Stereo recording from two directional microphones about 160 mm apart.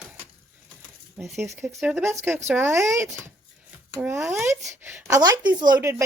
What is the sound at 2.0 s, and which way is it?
A woman's voice, 15° right (ahead or behind).